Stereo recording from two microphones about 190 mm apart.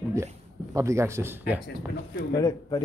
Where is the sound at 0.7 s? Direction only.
15° right (ahead or behind).